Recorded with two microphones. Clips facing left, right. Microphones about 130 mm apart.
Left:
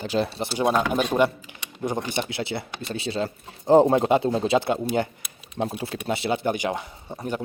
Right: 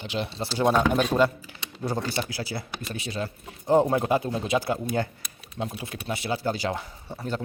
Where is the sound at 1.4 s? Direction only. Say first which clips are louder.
Left 2 dB; 20° left (ahead or behind).